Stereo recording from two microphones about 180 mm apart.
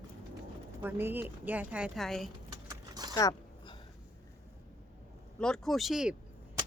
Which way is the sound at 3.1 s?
20° left (ahead or behind).